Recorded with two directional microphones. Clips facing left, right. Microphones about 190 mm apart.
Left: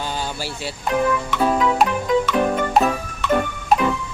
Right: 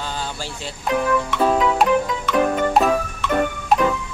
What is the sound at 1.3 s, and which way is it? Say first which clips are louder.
Music: right 1 dB; centre (ahead or behind).